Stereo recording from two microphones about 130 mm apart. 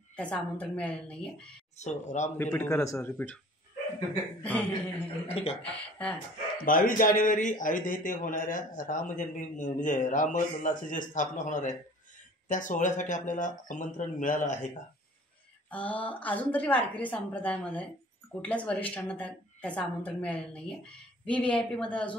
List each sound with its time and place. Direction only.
0.1 s a woman's voice: 10° left (ahead or behind)
1.8 s speech: 65° left (ahead or behind)
2.3 s a man's voice: 15° left (ahead or behind)
4.4 s a woman's voice: 10° left (ahead or behind)
5.3 s speech: 50° left (ahead or behind)
5.7 s speech: 10° left (ahead or behind)
6.6 s a man's voice: 90° left; by 14.7 s 70° left (ahead or behind)
15.7 s a woman's voice: 10° left (ahead or behind)